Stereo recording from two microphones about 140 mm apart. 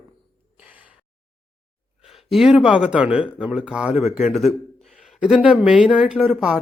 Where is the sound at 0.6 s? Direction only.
10° right (ahead or behind).